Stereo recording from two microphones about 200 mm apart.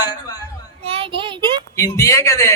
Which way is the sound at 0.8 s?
30° right (ahead or behind).